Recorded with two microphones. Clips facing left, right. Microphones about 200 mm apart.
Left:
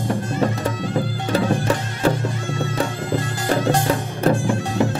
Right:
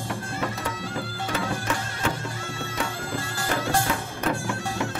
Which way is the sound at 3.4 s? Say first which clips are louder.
Left 6 dB; 35° left (ahead or behind).